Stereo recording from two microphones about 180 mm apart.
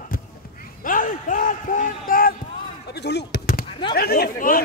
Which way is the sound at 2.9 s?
70° left (ahead or behind).